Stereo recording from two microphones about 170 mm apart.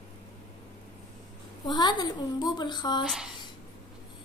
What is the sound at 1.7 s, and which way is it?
Speech, 25° left (ahead or behind).